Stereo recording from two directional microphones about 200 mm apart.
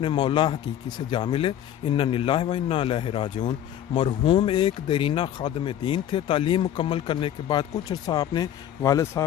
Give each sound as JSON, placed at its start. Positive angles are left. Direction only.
{"t": 0.0, "sound": "speech", "side_deg": 25}